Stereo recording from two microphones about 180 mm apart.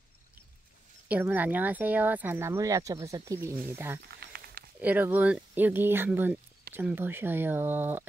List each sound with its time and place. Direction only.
1.0 s speech: 10° right (ahead or behind)
4.2 s a sound: 60° right (ahead or behind)
4.7 s speech: 10° right (ahead or behind)